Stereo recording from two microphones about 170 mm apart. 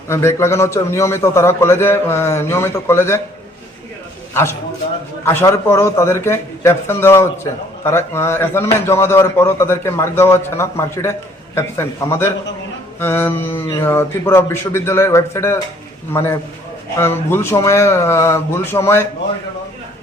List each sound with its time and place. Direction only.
0.1 s a man's voice: 15° left (ahead or behind)
5.2 s a man's voice: 15° left (ahead or behind)